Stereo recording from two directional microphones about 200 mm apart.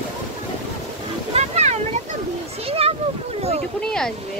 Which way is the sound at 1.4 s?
35° right (ahead or behind).